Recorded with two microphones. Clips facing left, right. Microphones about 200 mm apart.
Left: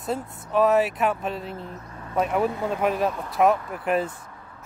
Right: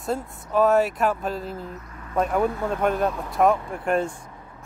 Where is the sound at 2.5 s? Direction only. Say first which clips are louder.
Even; 15° left (ahead or behind).